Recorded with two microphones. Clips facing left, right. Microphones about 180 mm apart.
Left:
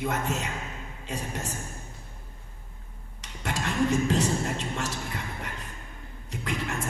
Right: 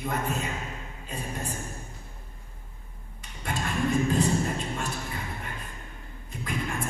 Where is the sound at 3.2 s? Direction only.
90° left.